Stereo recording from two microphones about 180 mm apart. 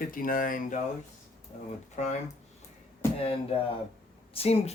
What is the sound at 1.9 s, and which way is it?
Speech, 40° left (ahead or behind).